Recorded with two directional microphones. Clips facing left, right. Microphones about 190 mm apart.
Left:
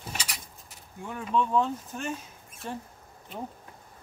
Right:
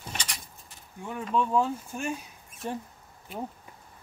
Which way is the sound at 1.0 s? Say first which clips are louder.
Even; 5° right (ahead or behind).